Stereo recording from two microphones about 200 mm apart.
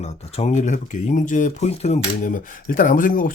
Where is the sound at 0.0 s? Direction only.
35° left (ahead or behind).